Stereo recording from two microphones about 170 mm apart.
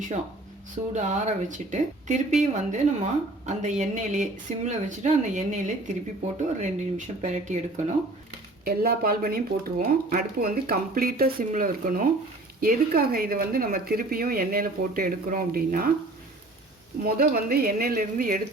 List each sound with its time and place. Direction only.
0.9 s speech: 45° right (ahead or behind)
8.6 s speech: 65° right (ahead or behind)
17.0 s speech: 60° right (ahead or behind)